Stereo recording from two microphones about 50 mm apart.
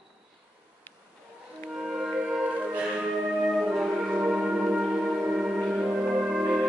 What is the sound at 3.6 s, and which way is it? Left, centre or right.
Music, centre.